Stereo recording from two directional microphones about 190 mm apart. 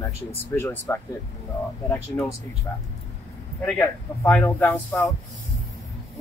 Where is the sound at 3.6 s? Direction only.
10° left (ahead or behind).